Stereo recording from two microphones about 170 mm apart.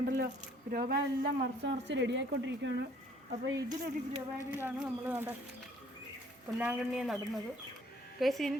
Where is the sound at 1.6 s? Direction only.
90° right.